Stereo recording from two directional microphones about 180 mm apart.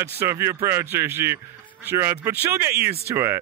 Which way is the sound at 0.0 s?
15° right (ahead or behind).